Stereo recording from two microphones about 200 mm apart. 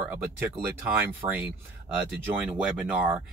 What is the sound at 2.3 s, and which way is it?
Speech, 5° right (ahead or behind).